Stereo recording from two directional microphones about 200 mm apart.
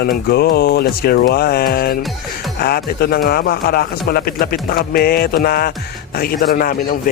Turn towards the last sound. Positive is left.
turn(degrees=45)  # may be behind; listen again after turning